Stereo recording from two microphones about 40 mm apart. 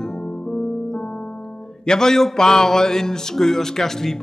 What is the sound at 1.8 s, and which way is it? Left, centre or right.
A man's voice, centre.